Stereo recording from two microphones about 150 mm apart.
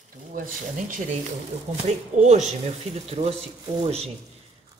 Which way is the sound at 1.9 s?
50° right (ahead or behind).